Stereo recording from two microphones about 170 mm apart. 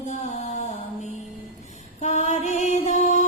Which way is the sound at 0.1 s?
45° left (ahead or behind).